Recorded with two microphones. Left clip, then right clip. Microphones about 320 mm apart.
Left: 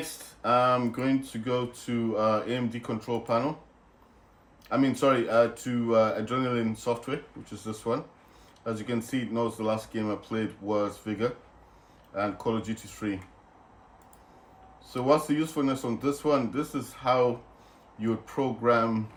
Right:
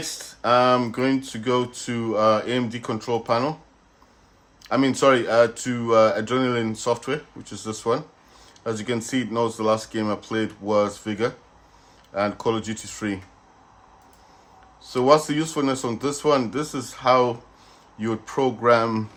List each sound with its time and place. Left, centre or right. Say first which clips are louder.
0.4 s speech: right 6 dB; right
4.6 s speech: right 6 dB; right
14.9 s speech: right 7 dB; right